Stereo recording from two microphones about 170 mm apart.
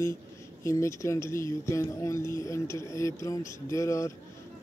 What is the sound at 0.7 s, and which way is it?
Speech, 15° left (ahead or behind).